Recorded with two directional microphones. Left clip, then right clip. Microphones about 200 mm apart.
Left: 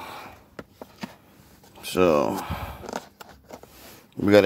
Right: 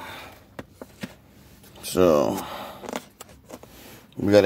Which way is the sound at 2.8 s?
15° right (ahead or behind).